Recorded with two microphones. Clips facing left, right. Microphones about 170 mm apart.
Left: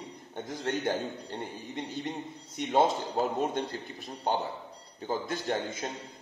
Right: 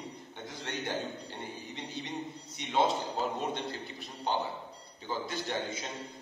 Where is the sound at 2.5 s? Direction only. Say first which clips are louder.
Left 4 dB; 45° left (ahead or behind).